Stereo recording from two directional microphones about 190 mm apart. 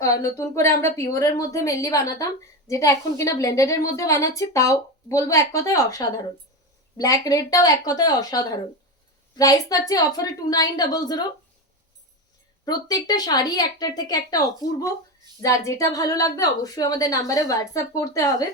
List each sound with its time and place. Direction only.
0.0 s a woman's voice: 15° left (ahead or behind)
12.6 s a woman's voice: 20° left (ahead or behind)